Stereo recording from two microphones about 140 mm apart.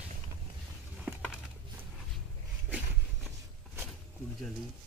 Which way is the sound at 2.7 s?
10° right (ahead or behind).